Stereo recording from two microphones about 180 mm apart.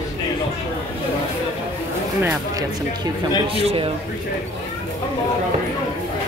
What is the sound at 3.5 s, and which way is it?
Speech, 30° right (ahead or behind).